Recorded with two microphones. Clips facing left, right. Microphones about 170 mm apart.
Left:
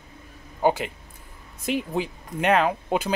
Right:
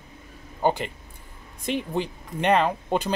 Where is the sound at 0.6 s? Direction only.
5° left (ahead or behind).